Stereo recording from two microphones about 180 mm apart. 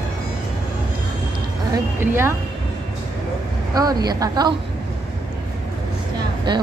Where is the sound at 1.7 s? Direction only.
15° right (ahead or behind).